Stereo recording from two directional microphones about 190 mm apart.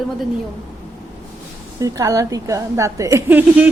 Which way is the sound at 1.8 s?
15° right (ahead or behind).